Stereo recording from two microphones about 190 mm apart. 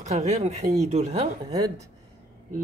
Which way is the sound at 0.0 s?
40° right (ahead or behind).